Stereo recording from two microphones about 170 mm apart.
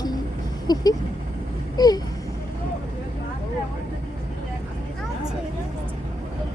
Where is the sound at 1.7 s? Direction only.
20° left (ahead or behind).